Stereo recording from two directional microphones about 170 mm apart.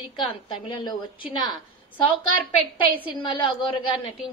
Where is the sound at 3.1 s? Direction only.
30° left (ahead or behind).